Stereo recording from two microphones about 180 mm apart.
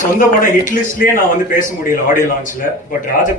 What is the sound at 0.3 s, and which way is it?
A man's voice, 45° left (ahead or behind).